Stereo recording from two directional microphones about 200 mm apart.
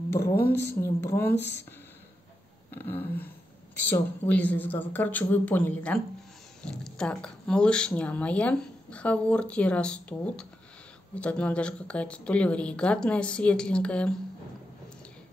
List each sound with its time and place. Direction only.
0.2 s speech: 25° left (ahead or behind)
0.7 s speech: 10° left (ahead or behind)
2.7 s speech: 10° left (ahead or behind)